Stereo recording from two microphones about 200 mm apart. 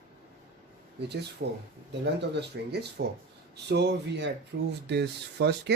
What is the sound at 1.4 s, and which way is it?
Speech, 55° right (ahead or behind).